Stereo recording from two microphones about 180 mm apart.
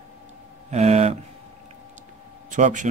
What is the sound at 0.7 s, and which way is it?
Speech, 35° right (ahead or behind).